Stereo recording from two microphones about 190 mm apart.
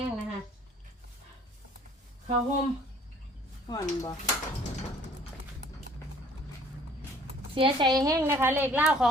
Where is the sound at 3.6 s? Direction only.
20° left (ahead or behind).